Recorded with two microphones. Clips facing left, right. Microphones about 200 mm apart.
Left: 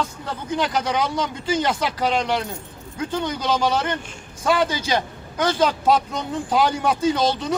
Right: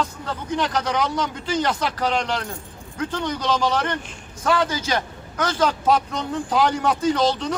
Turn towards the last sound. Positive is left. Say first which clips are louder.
# even
turn(degrees=10)  # may be behind; listen again after turning